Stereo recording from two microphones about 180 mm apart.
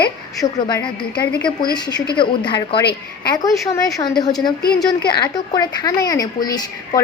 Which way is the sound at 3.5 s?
Centre (ahead or behind).